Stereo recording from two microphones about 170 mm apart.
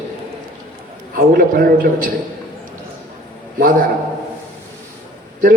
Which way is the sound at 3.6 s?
55° right (ahead or behind).